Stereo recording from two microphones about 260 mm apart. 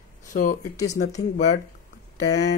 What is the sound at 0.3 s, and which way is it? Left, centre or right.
Speech, left.